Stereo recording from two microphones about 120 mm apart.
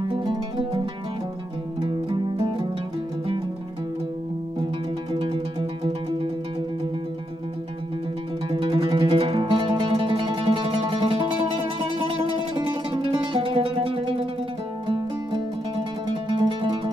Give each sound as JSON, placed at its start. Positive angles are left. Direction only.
{"t": 0.1, "sound": "music", "side_deg": -40}
{"t": 8.5, "sound": "music", "side_deg": -45}
{"t": 16.1, "sound": "music", "side_deg": -40}